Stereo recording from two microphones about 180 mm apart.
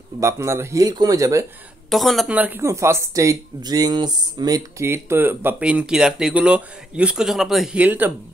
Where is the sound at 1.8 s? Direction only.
Centre (ahead or behind).